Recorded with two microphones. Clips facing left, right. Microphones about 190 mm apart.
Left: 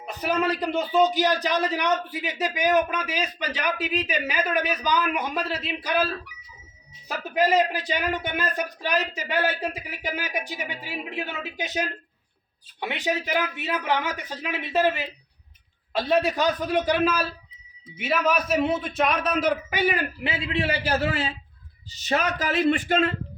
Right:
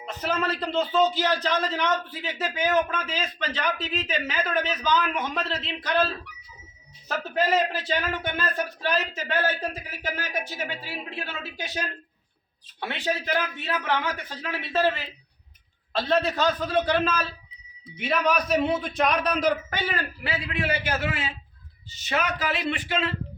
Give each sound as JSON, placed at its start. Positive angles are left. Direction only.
{"t": 0.0, "sound": "a man's voice", "side_deg": 10}